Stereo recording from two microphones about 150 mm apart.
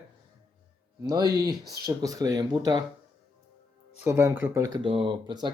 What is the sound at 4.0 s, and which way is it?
Speech, 15° right (ahead or behind).